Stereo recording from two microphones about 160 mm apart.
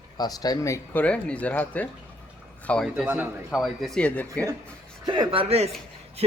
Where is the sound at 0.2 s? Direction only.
25° left (ahead or behind).